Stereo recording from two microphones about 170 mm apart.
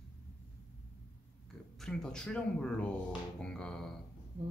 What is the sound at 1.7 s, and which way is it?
Speech, 5° left (ahead or behind).